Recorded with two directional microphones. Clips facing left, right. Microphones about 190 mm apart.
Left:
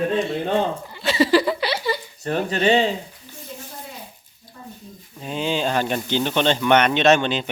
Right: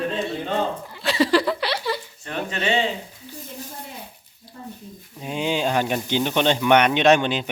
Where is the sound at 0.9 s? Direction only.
Centre (ahead or behind).